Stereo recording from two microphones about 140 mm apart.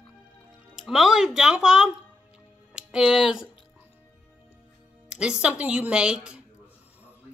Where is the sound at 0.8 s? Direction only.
5° right (ahead or behind).